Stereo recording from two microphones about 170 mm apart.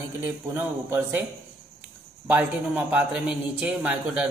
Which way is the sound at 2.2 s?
10° right (ahead or behind).